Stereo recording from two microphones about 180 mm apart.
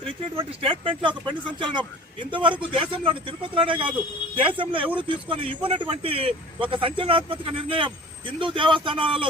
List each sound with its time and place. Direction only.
0.6 s a man's voice: 30° right (ahead or behind)